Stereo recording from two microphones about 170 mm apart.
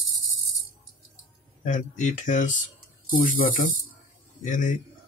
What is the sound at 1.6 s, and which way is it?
Speech, 45° left (ahead or behind).